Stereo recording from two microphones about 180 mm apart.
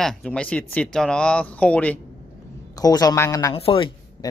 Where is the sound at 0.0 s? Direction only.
Centre (ahead or behind).